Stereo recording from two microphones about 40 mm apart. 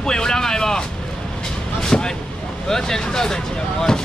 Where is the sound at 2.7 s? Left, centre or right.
Centre.